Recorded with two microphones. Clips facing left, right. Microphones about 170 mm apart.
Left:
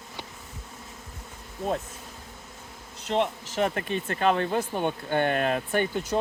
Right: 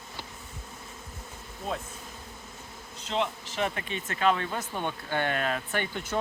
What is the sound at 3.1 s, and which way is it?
Speech, 45° left (ahead or behind).